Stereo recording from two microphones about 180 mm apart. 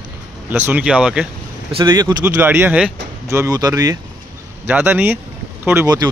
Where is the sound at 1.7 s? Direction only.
25° right (ahead or behind).